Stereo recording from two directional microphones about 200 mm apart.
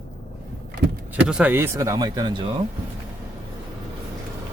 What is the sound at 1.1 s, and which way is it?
Speech, 5° right (ahead or behind).